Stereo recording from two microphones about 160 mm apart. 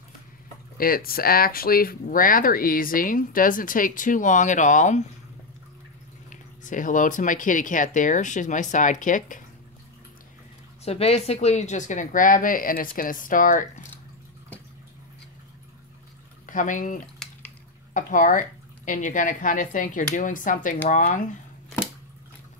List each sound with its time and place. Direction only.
0.7 s speech: 65° left (ahead or behind); by 5.0 s 50° left (ahead or behind)
6.3 s speech: 50° left (ahead or behind)
10.8 s speech: 40° left (ahead or behind); by 13.7 s 55° left (ahead or behind)
16.4 s speech: 55° left (ahead or behind)
17.2 s dishes: centre (ahead or behind)
17.9 s speech: 55° left (ahead or behind)